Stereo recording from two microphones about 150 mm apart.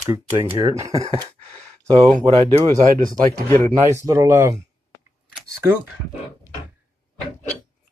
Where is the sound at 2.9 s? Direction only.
65° right (ahead or behind).